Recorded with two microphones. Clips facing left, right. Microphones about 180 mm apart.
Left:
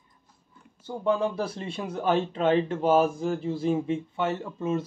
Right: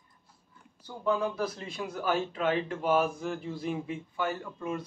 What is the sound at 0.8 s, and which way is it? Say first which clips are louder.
Speech: left 4 dB; 30° left (ahead or behind).